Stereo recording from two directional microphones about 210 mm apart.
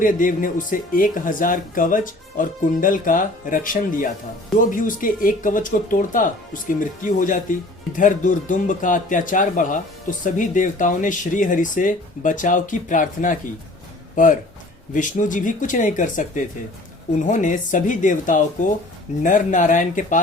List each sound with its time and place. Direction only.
0.0 s speech: 40° left (ahead or behind)
14.9 s speech: 35° left (ahead or behind)